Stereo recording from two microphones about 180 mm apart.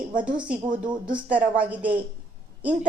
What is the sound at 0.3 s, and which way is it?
A woman's voice, 5° right (ahead or behind).